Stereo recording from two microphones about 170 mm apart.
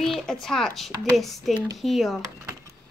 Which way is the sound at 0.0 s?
Centre (ahead or behind).